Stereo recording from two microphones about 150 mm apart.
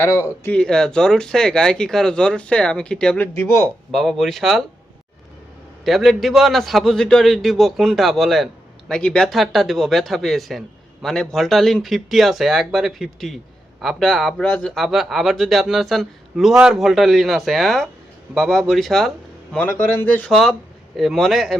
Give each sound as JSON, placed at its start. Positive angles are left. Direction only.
{"t": 0.0, "sound": "speech", "side_deg": 20}
{"t": 0.5, "sound": "a man's voice", "side_deg": 5}
{"t": 3.3, "sound": "speech", "side_deg": 15}
{"t": 3.9, "sound": "a man's voice", "side_deg": 0}
{"t": 5.8, "sound": "a man's voice", "side_deg": 0}